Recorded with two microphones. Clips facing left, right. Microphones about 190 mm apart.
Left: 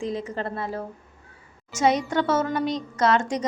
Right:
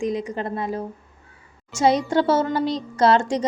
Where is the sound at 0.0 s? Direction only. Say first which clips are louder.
Right 4 dB; 15° right (ahead or behind).